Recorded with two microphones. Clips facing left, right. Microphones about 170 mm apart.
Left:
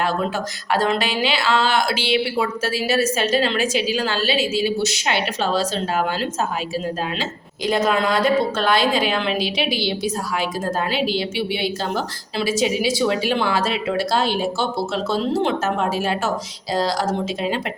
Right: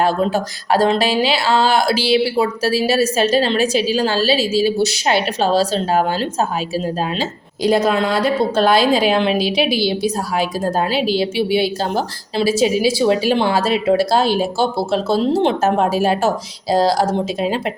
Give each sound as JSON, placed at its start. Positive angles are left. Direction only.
{"t": 0.0, "sound": "speech", "side_deg": -35}